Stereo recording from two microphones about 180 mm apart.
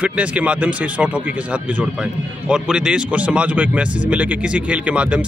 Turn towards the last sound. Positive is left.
turn(degrees=-5)  # may be behind; listen again after turning